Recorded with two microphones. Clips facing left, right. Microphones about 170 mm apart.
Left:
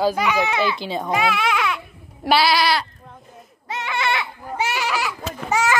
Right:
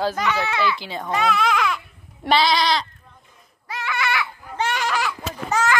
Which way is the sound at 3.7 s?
25° left (ahead or behind).